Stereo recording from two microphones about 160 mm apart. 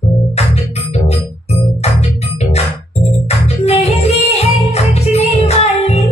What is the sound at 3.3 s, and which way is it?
Music, 40° left (ahead or behind).